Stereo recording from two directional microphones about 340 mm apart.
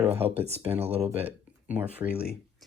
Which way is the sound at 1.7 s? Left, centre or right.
Centre.